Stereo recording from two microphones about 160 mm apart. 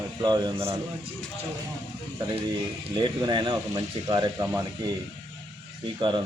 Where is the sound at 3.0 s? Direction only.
25° right (ahead or behind).